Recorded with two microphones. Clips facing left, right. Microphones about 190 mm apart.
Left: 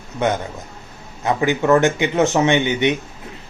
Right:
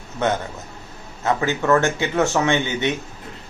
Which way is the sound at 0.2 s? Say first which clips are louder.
Left 2 dB; 15° left (ahead or behind).